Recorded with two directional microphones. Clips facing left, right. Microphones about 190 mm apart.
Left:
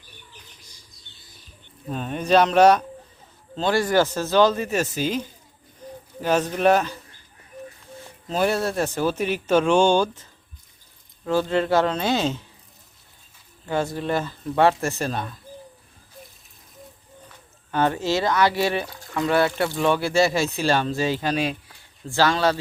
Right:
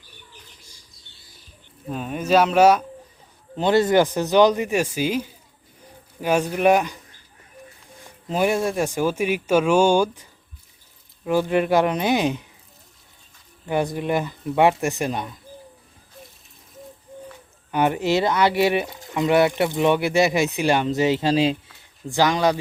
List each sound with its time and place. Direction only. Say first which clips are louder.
1.9 s speech: even; 5° right (ahead or behind)
3.5 s speech: right 3 dB; 20° right (ahead or behind)
8.0 s speech: right 1 dB; 15° right (ahead or behind)
11.3 s speech: right 2 dB; 15° right (ahead or behind)
13.7 s speech: right 2 dB; 15° right (ahead or behind)
17.7 s speech: right 2 dB; 15° right (ahead or behind)